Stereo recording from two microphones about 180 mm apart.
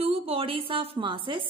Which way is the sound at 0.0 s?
35° right (ahead or behind).